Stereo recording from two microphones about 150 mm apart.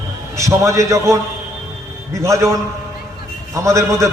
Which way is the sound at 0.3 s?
20° right (ahead or behind).